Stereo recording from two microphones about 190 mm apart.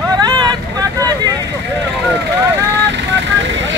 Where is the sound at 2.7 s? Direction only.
70° right (ahead or behind).